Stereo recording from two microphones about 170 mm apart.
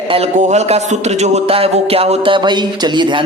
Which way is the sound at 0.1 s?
40° right (ahead or behind).